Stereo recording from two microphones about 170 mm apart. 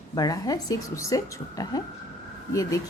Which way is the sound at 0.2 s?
20° left (ahead or behind).